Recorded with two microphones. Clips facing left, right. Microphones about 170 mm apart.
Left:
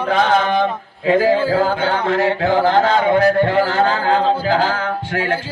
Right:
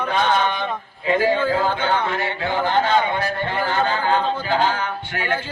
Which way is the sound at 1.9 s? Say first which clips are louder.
Left 5 dB; 90° left.